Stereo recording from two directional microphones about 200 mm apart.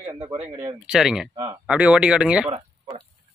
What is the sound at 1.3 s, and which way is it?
Speech, 15° right (ahead or behind).